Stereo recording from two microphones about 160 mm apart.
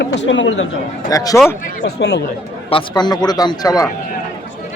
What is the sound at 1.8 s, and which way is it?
Speech, 90° left.